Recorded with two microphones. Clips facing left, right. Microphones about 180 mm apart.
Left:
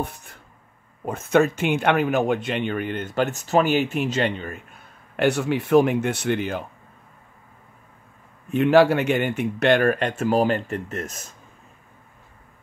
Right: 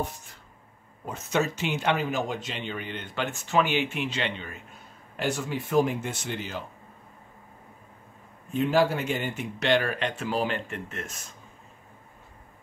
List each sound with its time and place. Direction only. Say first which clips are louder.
0.0 s a sound: left 3 dB; 60° left (ahead or behind)
1.0 s speech: left 8 dB; 55° left (ahead or behind)
5.1 s speech: left 8 dB; 65° left (ahead or behind)
8.5 s speech: left 7 dB; 70° left (ahead or behind); by 11.2 s 40° left (ahead or behind)